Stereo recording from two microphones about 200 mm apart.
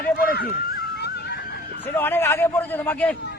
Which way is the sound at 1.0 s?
55° left (ahead or behind).